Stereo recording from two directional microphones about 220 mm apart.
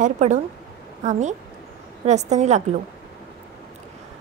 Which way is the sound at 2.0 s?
30° right (ahead or behind).